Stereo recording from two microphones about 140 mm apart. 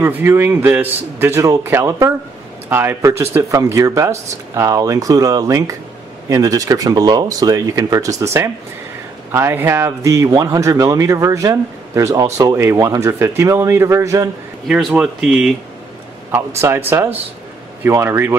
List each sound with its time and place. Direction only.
0.0 s a man's voice: 15° right (ahead or behind)
14.7 s speech: 5° right (ahead or behind)
16.3 s a man's voice: 20° right (ahead or behind)